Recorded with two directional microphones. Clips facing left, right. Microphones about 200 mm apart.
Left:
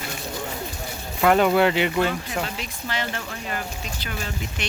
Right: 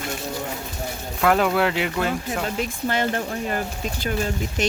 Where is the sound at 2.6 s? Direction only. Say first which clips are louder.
Right 7 dB; 50° right (ahead or behind).